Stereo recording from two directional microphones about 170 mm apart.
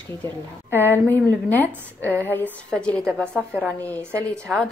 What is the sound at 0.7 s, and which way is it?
A woman's voice, 10° left (ahead or behind).